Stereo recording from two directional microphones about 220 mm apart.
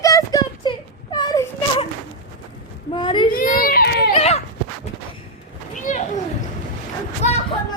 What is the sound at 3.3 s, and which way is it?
Baby cry, 40° left (ahead or behind).